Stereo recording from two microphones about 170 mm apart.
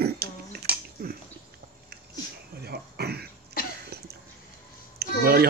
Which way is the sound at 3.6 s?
60° left (ahead or behind).